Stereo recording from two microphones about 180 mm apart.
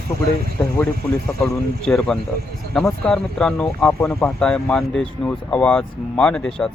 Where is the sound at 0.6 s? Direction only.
15° left (ahead or behind).